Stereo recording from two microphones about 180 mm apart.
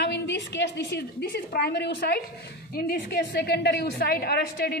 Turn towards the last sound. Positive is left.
turn(degrees=60)  # may be behind; listen again after turning